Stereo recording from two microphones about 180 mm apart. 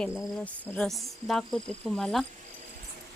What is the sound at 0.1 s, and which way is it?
Speech, 15° left (ahead or behind).